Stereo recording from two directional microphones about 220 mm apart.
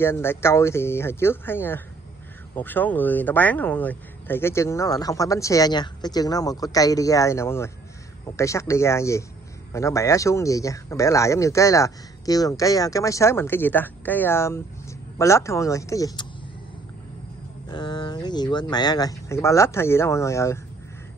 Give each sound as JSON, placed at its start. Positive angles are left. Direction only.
{"t": 0.0, "sound": "speech", "side_deg": 10}
{"t": 17.6, "sound": "speech", "side_deg": 20}